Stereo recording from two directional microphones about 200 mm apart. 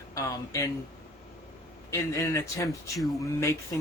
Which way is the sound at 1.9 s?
15° left (ahead or behind).